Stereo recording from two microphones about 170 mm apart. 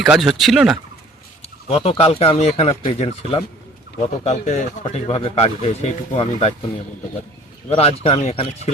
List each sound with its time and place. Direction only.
0.0 s speech: centre (ahead or behind)
1.6 s speech: 35° left (ahead or behind)
7.7 s speech: 35° left (ahead or behind)